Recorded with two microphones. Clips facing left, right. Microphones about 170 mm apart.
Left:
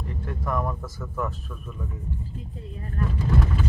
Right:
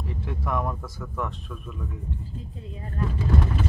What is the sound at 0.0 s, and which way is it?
Speech, centre (ahead or behind).